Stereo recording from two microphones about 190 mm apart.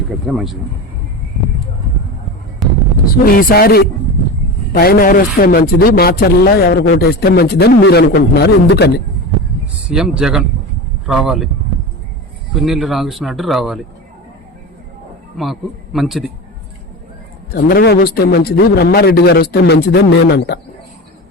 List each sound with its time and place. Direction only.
0.3 s speech: centre (ahead or behind)
2.6 s a sound: centre (ahead or behind)
3.2 s a man's voice: 50° left (ahead or behind)
9.9 s speech: 5° right (ahead or behind)
12.6 s speech: centre (ahead or behind)
15.4 s speech: centre (ahead or behind)
17.5 s a man's voice: 55° left (ahead or behind)